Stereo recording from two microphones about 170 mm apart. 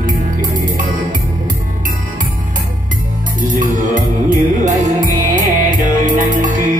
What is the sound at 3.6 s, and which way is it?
Music, 50° right (ahead or behind).